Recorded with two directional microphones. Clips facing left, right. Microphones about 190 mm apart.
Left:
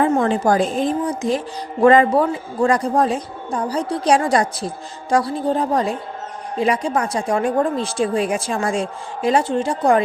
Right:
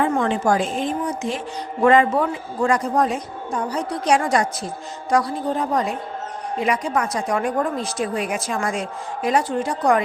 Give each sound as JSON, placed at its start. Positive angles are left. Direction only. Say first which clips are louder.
{"t": 0.2, "sound": "a woman's voice", "louder": "left 3 dB", "side_deg": 35}